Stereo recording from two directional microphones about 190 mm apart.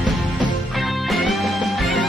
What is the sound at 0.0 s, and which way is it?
Music, centre (ahead or behind).